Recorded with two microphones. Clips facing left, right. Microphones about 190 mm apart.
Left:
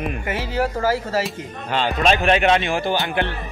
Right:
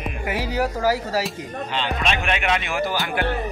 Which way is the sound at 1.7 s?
45° left (ahead or behind).